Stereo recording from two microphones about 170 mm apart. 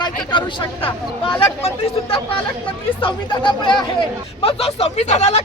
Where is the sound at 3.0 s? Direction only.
25° left (ahead or behind).